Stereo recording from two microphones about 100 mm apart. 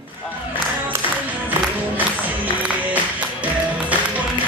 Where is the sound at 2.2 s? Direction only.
15° right (ahead or behind).